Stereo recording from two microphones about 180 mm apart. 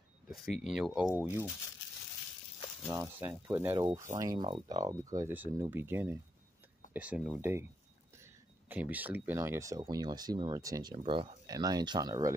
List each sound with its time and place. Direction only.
0.4 s speech: centre (ahead or behind)
2.9 s speech: 10° right (ahead or behind)
8.6 s speech: 10° right (ahead or behind)